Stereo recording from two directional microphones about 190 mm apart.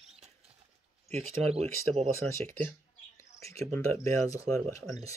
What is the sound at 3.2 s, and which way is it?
Cricket, 15° left (ahead or behind).